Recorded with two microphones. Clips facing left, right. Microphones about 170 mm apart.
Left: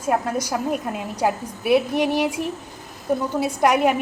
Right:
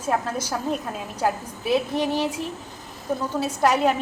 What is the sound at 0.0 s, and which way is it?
A woman's voice, 10° left (ahead or behind).